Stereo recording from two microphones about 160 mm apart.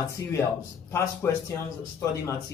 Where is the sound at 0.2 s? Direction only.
15° left (ahead or behind).